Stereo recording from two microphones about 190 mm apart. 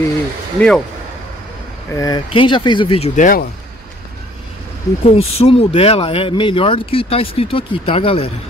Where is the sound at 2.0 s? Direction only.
25° left (ahead or behind).